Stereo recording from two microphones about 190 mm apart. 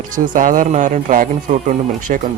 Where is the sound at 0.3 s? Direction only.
45° right (ahead or behind).